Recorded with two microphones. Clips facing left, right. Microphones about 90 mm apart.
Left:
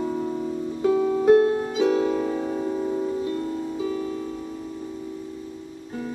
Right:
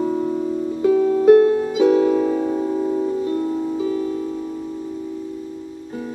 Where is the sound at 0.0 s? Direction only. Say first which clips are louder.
Right 6 dB; 10° right (ahead or behind).